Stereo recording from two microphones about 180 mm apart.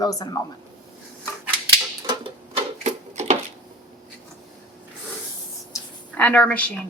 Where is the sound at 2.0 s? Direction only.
25° right (ahead or behind).